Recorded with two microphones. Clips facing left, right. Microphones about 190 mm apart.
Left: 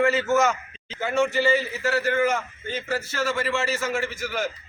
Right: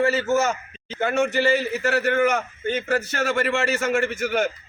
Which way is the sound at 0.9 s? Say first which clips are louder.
Right 1 dB; 60° right (ahead or behind).